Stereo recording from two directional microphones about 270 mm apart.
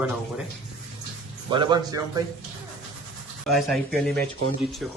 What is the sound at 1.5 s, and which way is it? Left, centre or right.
Speech, centre.